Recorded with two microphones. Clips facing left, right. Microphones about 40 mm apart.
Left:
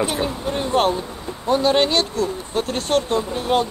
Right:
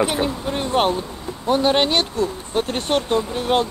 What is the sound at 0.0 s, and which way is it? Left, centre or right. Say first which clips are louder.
Speech: right 1 dB; centre.